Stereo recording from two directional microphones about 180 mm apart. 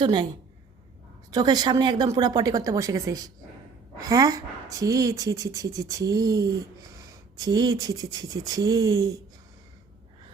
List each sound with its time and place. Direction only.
0.0 s a woman's voice: 25° right (ahead or behind)
1.3 s a woman's voice: 20° right (ahead or behind)